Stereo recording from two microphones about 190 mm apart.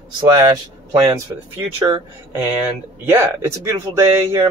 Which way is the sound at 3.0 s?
15° right (ahead or behind).